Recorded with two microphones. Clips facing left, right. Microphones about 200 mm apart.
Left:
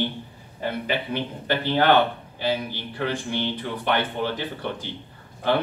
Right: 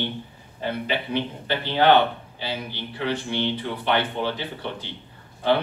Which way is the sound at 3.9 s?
50° left (ahead or behind).